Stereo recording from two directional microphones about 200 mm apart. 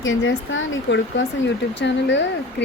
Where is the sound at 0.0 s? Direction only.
75° left (ahead or behind).